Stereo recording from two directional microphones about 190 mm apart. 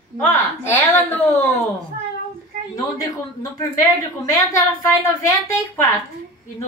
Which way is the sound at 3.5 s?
20° left (ahead or behind).